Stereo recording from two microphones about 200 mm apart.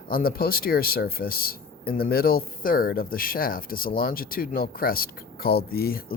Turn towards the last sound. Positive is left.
turn(degrees=50)  # may be behind; listen again after turning